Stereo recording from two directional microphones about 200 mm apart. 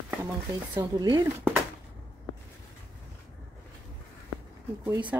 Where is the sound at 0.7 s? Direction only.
20° right (ahead or behind).